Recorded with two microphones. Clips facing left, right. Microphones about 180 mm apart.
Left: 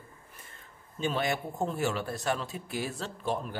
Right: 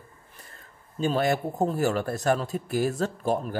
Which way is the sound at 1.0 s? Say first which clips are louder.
Right 6 dB; 40° right (ahead or behind).